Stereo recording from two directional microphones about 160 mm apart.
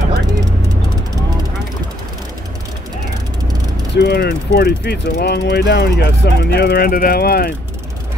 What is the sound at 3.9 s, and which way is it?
Speech, 85° left.